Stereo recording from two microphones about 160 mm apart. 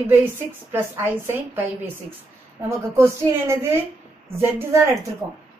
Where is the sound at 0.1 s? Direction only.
15° right (ahead or behind).